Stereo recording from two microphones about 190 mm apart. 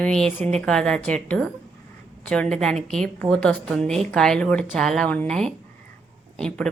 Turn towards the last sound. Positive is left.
turn(degrees=5)  # may be behind; listen again after turning